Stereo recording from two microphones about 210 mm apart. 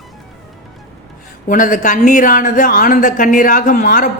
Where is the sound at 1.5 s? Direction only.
40° left (ahead or behind).